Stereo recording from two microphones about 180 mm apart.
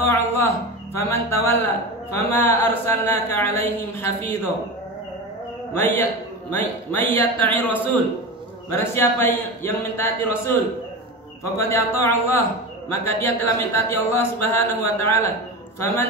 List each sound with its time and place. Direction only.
0.0 s a man's voice: 15° left (ahead or behind)
6.5 s a man's voice: 10° left (ahead or behind)